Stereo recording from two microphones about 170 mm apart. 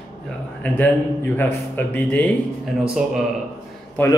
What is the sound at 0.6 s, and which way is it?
Speech, 10° left (ahead or behind).